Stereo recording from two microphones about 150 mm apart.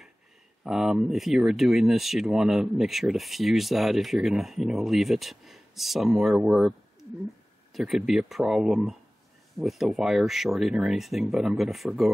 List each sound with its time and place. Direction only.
0.7 s speech: 5° right (ahead or behind)